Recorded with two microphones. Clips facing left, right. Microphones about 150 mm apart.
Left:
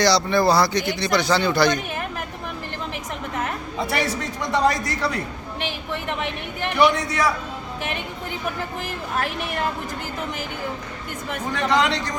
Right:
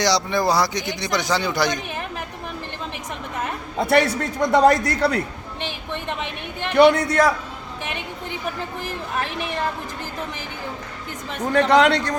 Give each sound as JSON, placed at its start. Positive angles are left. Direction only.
{"t": 0.0, "sound": "speech", "side_deg": -15}
{"t": 3.8, "sound": "a man's voice", "side_deg": -60}
{"t": 7.1, "sound": "a man's voice", "side_deg": -50}
{"t": 11.5, "sound": "a man's voice", "side_deg": -60}